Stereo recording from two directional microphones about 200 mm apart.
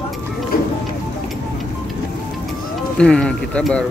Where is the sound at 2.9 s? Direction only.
5° left (ahead or behind).